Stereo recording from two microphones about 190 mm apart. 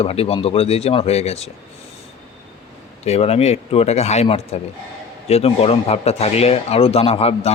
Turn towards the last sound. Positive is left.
turn(degrees=30)  # may be behind; listen again after turning